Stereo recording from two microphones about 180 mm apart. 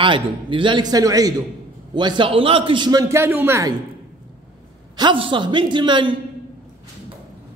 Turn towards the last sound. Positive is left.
turn(degrees=-25)  # may be behind; listen again after turning